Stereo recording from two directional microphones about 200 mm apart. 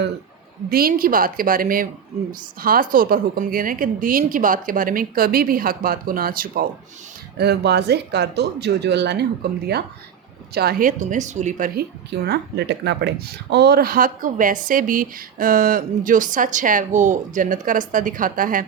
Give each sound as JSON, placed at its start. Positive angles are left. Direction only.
{"t": 0.7, "sound": "a woman's voice", "side_deg": -50}
{"t": 10.5, "sound": "a woman's voice", "side_deg": -50}